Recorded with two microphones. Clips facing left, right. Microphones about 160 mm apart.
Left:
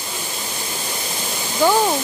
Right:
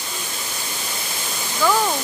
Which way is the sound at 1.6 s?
25° left (ahead or behind).